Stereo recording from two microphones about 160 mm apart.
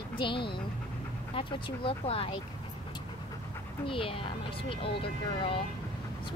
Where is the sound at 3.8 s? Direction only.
35° left (ahead or behind).